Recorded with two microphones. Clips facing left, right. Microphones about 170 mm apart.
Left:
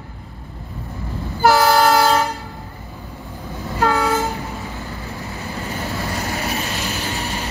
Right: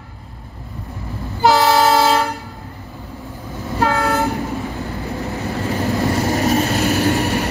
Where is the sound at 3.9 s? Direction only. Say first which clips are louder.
Left 1 dB; 60° right (ahead or behind).